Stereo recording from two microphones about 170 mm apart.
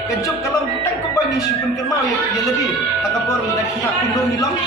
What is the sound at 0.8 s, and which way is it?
Speech, 20° left (ahead or behind).